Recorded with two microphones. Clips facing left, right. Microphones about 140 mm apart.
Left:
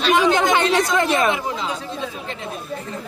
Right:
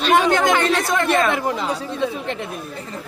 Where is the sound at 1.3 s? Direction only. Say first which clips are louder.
Right 3 dB; 60° right (ahead or behind).